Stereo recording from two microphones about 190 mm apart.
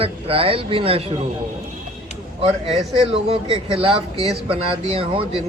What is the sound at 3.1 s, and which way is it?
Speech, 30° right (ahead or behind).